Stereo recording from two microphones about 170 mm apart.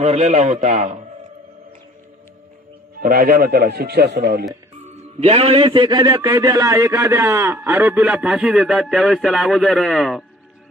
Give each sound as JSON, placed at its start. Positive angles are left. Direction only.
{"t": 0.0, "sound": "a man's voice", "side_deg": -45}
{"t": 3.0, "sound": "a man's voice", "side_deg": -60}
{"t": 5.2, "sound": "a man's voice", "side_deg": -40}